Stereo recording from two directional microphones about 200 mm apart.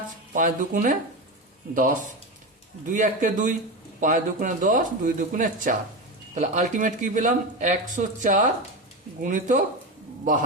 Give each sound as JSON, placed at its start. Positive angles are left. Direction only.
{"t": 0.3, "sound": "speech", "side_deg": -40}